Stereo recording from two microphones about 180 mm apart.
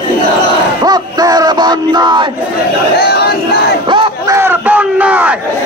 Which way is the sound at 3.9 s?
25° right (ahead or behind).